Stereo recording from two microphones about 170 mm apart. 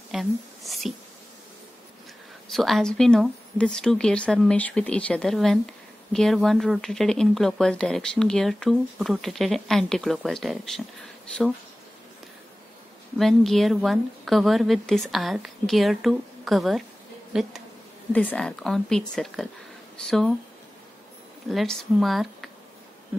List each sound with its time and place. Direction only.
0.1 s speech: centre (ahead or behind)
2.5 s speech: centre (ahead or behind)
13.2 s speech: centre (ahead or behind)
18.1 s speech: 10° left (ahead or behind)
21.5 s speech: centre (ahead or behind)